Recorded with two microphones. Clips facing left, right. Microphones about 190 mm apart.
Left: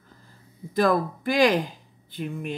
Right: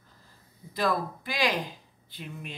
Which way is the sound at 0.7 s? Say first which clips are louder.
Left 7 dB; 50° left (ahead or behind).